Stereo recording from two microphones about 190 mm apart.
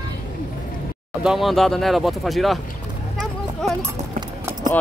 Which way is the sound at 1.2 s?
Centre (ahead or behind).